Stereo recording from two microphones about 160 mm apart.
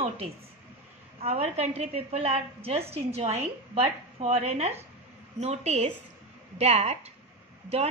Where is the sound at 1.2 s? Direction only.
40° right (ahead or behind).